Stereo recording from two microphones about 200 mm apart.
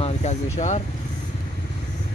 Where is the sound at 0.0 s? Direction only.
35° left (ahead or behind).